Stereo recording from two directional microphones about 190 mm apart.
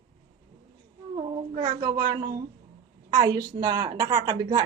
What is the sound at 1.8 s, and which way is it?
A woman's voice, 20° right (ahead or behind).